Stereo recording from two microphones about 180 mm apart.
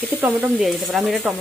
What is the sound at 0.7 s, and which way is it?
Speech, centre (ahead or behind).